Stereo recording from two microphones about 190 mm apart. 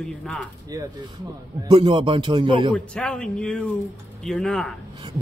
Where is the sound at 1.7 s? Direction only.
25° right (ahead or behind).